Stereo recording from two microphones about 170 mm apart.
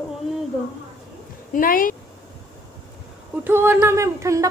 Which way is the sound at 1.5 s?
55° left (ahead or behind).